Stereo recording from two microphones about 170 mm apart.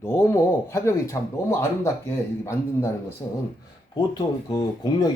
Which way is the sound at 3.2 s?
25° left (ahead or behind).